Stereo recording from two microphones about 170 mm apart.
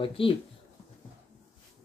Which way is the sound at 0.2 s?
30° left (ahead or behind).